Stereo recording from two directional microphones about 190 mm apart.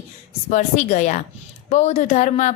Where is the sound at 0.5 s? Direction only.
40° left (ahead or behind).